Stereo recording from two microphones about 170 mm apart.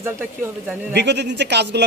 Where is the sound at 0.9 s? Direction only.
85° right.